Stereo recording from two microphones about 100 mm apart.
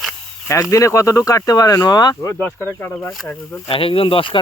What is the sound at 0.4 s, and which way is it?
Speech, 30° left (ahead or behind).